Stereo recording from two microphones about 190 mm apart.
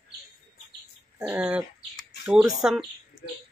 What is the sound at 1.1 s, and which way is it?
Dog, 5° right (ahead or behind).